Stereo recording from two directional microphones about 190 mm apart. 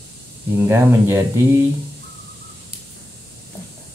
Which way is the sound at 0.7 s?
15° right (ahead or behind).